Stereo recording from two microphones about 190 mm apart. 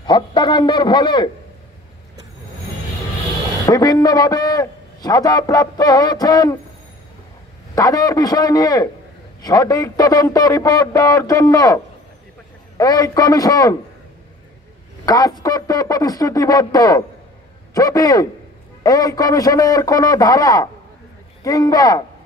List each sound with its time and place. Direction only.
0.0 s a man's voice: 25° left (ahead or behind)
3.6 s a man's voice: 20° left (ahead or behind)
7.7 s a man's voice: 20° left (ahead or behind)
15.0 s a man's voice: 20° left (ahead or behind)